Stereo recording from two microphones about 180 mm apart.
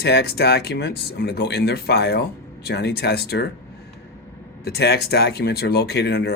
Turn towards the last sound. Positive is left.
turn(degrees=65)  # may be behind; listen again after turning